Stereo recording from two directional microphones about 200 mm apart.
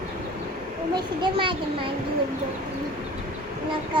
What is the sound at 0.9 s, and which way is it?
Speech, 25° right (ahead or behind).